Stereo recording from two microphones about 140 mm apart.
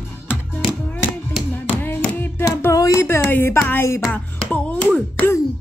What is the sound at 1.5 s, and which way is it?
Music, 15° left (ahead or behind).